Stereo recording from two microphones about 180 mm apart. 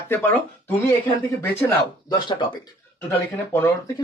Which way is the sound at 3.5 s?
15° left (ahead or behind).